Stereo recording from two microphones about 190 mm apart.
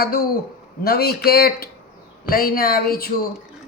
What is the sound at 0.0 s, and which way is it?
Speech, 55° left (ahead or behind).